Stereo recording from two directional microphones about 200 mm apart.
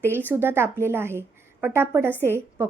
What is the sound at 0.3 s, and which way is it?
A woman's voice, 10° right (ahead or behind).